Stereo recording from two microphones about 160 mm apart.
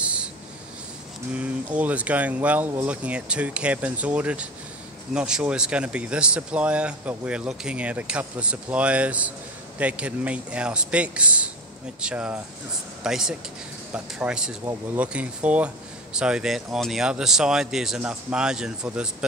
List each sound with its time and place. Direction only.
0.0 s writing: 5° right (ahead or behind)
1.3 s speech: 10° right (ahead or behind)